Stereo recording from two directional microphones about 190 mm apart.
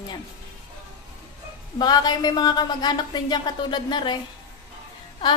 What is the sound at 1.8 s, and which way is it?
A woman's voice, 20° left (ahead or behind).